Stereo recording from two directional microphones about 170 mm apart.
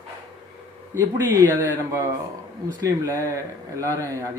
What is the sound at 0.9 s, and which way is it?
Speech, 15° right (ahead or behind).